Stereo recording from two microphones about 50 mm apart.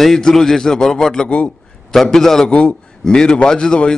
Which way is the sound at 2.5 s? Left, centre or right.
Left.